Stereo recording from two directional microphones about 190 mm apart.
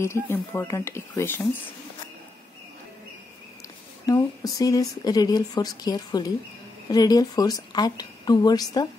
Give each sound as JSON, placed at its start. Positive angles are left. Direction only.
{"t": 0.0, "sound": "speech", "side_deg": 15}
{"t": 4.0, "sound": "speech", "side_deg": 20}